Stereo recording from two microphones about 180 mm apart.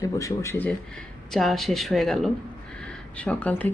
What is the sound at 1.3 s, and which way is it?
Speech, centre (ahead or behind).